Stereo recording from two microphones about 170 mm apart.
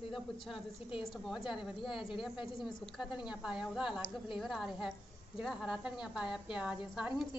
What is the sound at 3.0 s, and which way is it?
Speech, 25° left (ahead or behind).